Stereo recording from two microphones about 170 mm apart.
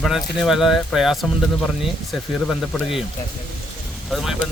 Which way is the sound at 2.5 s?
5° left (ahead or behind).